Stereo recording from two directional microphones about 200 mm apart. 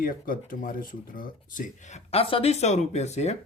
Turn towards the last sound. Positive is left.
turn(degrees=35)  # may be behind; listen again after turning